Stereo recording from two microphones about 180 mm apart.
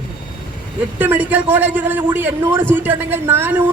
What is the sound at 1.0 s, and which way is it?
A man's voice, 10° right (ahead or behind).